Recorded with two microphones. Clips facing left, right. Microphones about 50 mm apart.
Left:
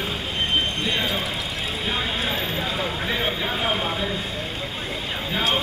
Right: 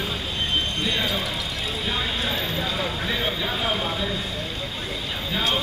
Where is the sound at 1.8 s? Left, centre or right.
Centre.